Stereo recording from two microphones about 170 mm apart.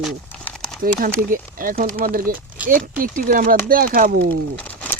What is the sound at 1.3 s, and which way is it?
Speech, 55° right (ahead or behind).